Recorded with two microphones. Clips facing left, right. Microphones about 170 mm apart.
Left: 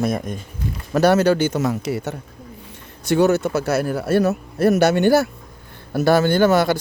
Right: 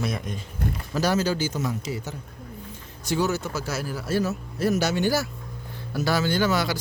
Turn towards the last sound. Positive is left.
turn(degrees=55)  # may be behind; listen again after turning